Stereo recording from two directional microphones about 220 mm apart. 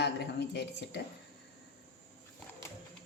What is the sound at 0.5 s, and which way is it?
Speech, 50° left (ahead or behind).